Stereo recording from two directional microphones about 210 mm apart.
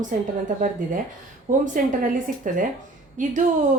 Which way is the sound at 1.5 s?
35° right (ahead or behind).